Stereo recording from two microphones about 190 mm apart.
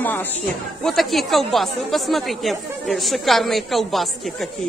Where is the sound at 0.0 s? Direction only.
10° left (ahead or behind).